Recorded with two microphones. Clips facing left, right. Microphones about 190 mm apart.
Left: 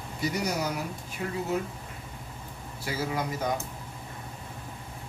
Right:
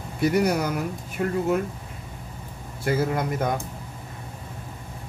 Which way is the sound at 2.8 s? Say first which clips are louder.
Right 7 dB; 55° right (ahead or behind).